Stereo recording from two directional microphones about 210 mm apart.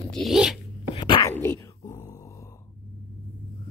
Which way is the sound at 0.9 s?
20° left (ahead or behind).